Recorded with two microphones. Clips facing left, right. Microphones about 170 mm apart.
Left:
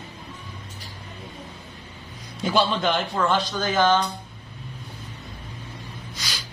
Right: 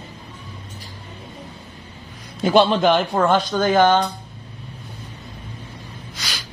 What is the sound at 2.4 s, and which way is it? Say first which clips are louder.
A man's voice: right 7 dB; 60° right (ahead or behind).